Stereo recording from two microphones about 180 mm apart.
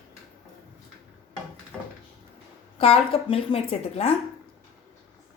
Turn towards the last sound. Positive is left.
turn(degrees=35)  # may be behind; listen again after turning